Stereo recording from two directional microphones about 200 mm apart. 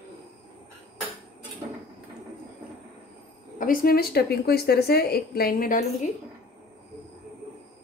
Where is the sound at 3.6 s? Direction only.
45° left (ahead or behind).